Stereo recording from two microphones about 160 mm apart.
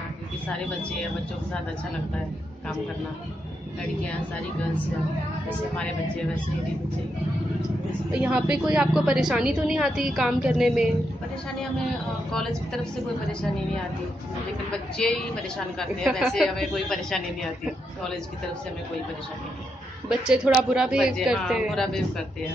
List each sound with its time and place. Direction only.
8.1 s a woman's voice: 5° right (ahead or behind)
12.3 s a woman's voice: 5° left (ahead or behind)
15.0 s a woman's voice: 5° left (ahead or behind)
20.1 s a woman's voice: 5° right (ahead or behind)